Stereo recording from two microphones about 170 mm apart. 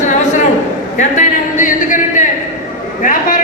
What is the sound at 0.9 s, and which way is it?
A man's voice, 50° left (ahead or behind).